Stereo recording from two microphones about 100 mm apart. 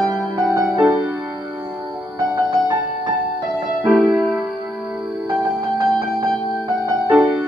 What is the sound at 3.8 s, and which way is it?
Music, 5° right (ahead or behind).